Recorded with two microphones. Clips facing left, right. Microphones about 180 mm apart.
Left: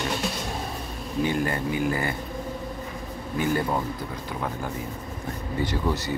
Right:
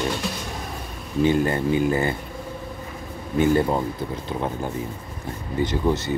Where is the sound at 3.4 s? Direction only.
20° right (ahead or behind).